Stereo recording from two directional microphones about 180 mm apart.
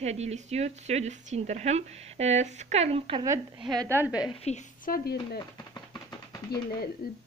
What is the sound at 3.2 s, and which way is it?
Speech, 15° right (ahead or behind).